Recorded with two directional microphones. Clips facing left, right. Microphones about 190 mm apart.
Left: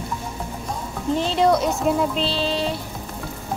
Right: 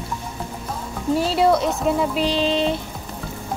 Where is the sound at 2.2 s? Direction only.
15° right (ahead or behind).